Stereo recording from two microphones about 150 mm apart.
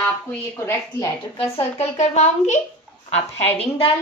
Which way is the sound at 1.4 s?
40° left (ahead or behind).